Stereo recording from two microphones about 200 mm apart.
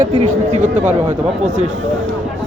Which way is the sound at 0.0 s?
40° right (ahead or behind).